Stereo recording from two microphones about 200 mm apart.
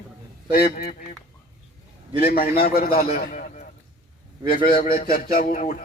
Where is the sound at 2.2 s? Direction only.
50° left (ahead or behind).